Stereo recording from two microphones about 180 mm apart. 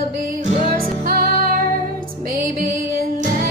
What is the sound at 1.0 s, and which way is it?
Music, 55° right (ahead or behind).